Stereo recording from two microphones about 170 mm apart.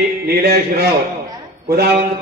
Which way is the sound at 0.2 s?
65° right (ahead or behind).